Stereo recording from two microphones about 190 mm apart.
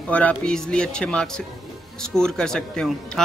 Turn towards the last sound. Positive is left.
turn(degrees=5)  # may be behind; listen again after turning